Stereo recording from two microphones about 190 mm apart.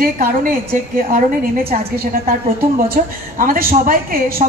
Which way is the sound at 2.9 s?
50° right (ahead or behind).